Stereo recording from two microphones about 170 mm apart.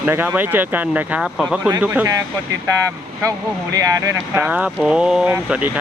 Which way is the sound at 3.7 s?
20° right (ahead or behind).